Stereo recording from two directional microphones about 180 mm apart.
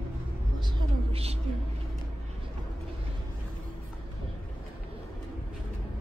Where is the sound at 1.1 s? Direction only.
35° right (ahead or behind).